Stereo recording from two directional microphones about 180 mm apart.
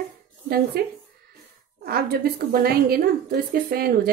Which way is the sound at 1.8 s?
55° right (ahead or behind).